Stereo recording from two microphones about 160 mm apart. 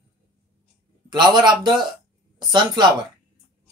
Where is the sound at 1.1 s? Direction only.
25° right (ahead or behind).